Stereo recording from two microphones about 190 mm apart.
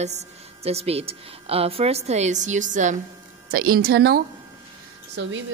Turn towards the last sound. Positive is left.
turn(degrees=-75)  # may be behind; listen again after turning